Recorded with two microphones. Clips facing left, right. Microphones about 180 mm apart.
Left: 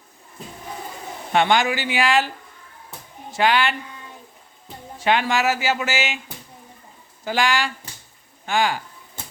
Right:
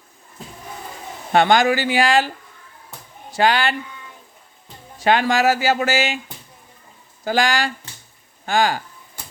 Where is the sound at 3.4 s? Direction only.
35° right (ahead or behind).